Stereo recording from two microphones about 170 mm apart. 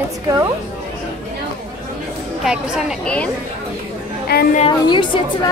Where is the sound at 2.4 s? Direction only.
5° right (ahead or behind).